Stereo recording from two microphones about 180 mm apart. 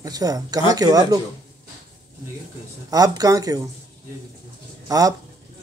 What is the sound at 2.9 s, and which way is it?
Speech, 20° right (ahead or behind).